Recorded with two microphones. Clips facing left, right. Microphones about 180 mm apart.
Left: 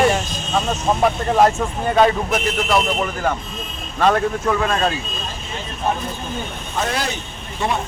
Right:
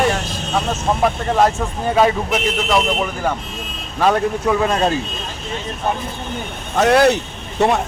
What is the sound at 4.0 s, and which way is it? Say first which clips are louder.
Speech: right 1 dB; 10° right (ahead or behind).